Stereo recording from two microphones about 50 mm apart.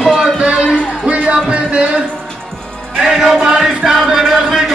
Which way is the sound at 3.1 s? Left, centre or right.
Centre.